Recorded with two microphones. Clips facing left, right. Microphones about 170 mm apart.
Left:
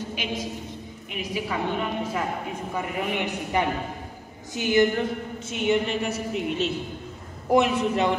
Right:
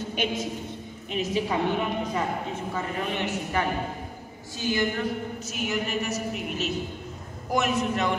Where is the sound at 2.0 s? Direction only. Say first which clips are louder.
Even; 10° left (ahead or behind); by 8.2 s 30° left (ahead or behind).